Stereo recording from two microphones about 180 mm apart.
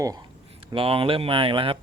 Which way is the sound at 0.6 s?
30° right (ahead or behind).